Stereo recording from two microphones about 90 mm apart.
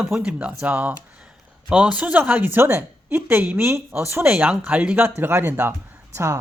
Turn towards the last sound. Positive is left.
turn(degrees=-35)  # may be behind; listen again after turning